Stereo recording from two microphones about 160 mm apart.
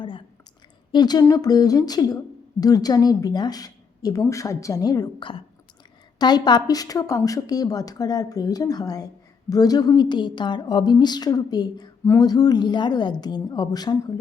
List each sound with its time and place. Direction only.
0.9 s a woman's voice: 25° left (ahead or behind)